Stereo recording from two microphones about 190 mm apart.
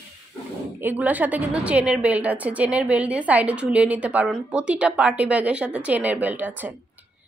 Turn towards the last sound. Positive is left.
turn(degrees=-10)  # may be behind; listen again after turning